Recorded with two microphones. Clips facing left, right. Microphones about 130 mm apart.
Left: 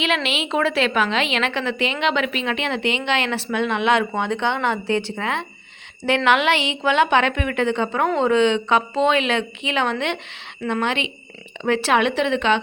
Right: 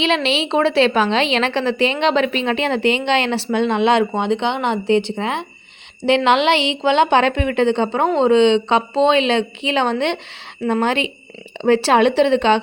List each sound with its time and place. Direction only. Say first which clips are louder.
0.0 s a woman's voice: right 5 dB; 30° right (ahead or behind)